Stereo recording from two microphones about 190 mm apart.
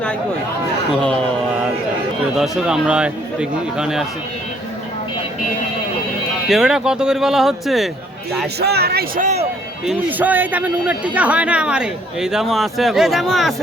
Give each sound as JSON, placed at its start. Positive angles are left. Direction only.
{"t": 2.3, "sound": "speech", "side_deg": 0}
{"t": 6.5, "sound": "speech", "side_deg": 0}
{"t": 8.5, "sound": "speech", "side_deg": -60}
{"t": 9.8, "sound": "speech", "side_deg": -5}